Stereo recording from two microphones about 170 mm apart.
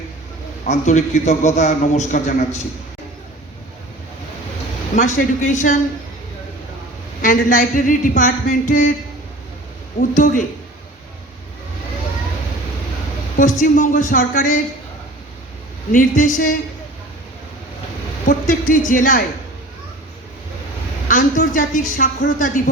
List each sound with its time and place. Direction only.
0.6 s a man's voice: 45° left (ahead or behind)
4.9 s a man's voice: 50° left (ahead or behind)
7.2 s a man's voice: 50° left (ahead or behind)
10.0 s a man's voice: 50° left (ahead or behind)
13.3 s a man's voice: 50° left (ahead or behind)
15.9 s a man's voice: 50° left (ahead or behind)
18.3 s a man's voice: 50° left (ahead or behind)
21.1 s a man's voice: 50° left (ahead or behind)